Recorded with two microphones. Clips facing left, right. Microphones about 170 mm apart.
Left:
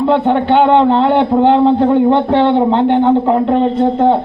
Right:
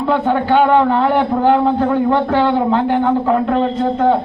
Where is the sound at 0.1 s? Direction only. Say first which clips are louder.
Left 1 dB; 20° left (ahead or behind).